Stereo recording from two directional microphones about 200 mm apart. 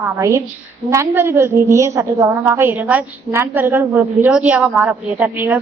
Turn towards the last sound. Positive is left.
turn(degrees=-10)  # may be behind; listen again after turning